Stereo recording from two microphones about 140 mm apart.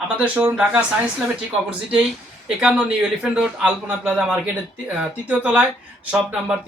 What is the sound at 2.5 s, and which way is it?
Speech, 5° right (ahead or behind).